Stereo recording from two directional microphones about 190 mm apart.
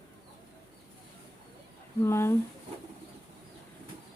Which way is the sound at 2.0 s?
15° left (ahead or behind).